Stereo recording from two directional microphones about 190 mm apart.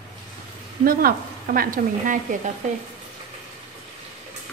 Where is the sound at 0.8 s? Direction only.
50° right (ahead or behind).